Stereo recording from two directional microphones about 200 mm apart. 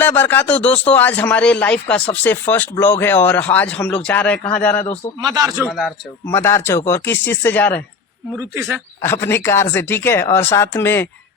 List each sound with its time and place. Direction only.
0.0 s speech: 10° left (ahead or behind)
5.2 s speech: 20° right (ahead or behind)
6.2 s speech: 10° left (ahead or behind)
8.4 s speech: 10° right (ahead or behind)
9.0 s speech: 10° left (ahead or behind)